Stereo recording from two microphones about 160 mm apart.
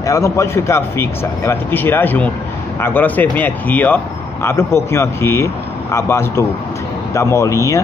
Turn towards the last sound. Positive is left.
turn(degrees=20)  # may be behind; listen again after turning